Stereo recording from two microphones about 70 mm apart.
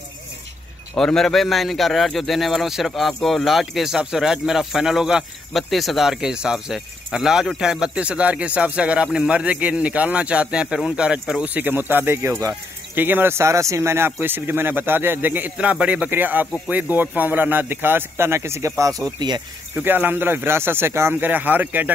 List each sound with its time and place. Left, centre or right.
0.9 s speech: centre
11.4 s speech: right
12.2 s speech: right
12.9 s speech: right
15.5 s speech: centre; by 19.4 s right
19.7 s speech: right